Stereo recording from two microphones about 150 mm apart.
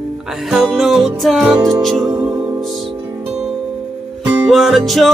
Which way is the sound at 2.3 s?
15° right (ahead or behind).